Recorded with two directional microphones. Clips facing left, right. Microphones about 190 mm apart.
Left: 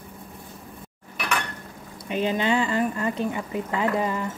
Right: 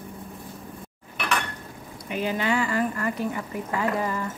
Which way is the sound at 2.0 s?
20° left (ahead or behind).